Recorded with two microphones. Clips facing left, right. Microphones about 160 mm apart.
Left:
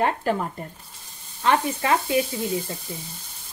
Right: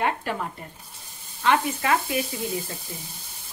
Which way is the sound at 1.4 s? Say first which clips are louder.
Left 1 dB; 35° left (ahead or behind).